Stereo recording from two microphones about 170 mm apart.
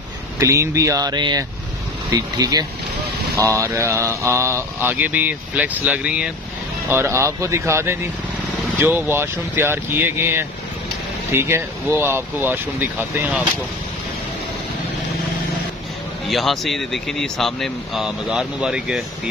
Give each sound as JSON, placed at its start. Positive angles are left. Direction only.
{"t": 0.4, "sound": "speech", "side_deg": -20}
{"t": 16.3, "sound": "speech", "side_deg": 0}